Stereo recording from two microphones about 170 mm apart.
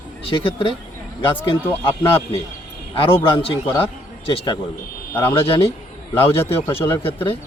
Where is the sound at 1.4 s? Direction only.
15° left (ahead or behind).